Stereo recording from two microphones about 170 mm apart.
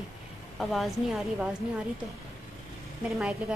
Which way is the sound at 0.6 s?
Centre (ahead or behind).